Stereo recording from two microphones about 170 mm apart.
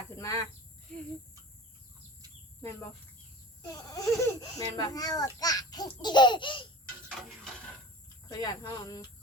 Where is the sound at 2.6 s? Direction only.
15° left (ahead or behind).